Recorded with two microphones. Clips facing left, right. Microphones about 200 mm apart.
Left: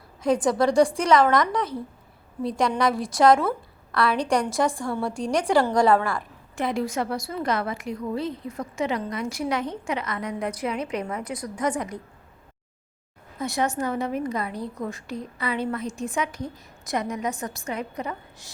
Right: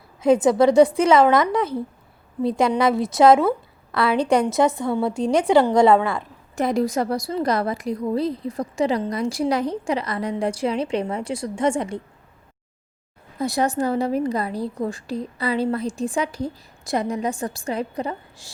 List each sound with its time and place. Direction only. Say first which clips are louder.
0.2 s a woman's voice: right 5 dB; 25° right (ahead or behind)
2.6 s a woman's voice: right 2 dB; 25° right (ahead or behind)
6.6 s a woman's voice: right 5 dB; 40° right (ahead or behind)
13.4 s a woman's voice: right 4 dB; 35° right (ahead or behind)